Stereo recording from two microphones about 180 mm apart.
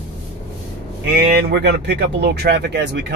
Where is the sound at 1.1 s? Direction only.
65° right (ahead or behind).